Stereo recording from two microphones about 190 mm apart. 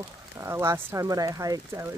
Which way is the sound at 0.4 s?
15° right (ahead or behind).